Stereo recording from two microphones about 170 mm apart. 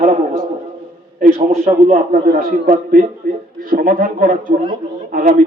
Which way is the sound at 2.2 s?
60° right (ahead or behind).